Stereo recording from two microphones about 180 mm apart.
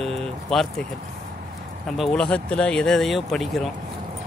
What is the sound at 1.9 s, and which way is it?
Speech, centre (ahead or behind).